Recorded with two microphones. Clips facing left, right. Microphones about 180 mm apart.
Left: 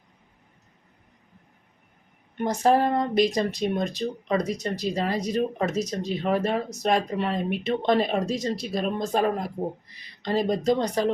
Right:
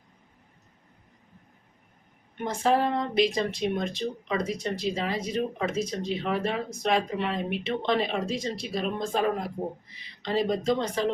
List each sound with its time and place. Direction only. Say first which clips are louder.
2.4 s speech: left 3 dB; 40° left (ahead or behind)
10.2 s speech: left 2 dB; 40° left (ahead or behind)